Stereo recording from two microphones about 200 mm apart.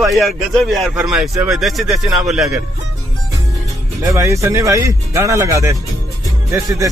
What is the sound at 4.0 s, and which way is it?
Speech, 15° right (ahead or behind).